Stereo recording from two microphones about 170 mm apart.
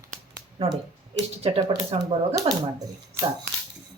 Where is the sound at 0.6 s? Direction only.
35° right (ahead or behind).